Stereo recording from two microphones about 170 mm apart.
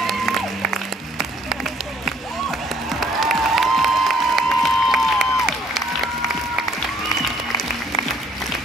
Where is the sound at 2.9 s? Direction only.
Centre (ahead or behind).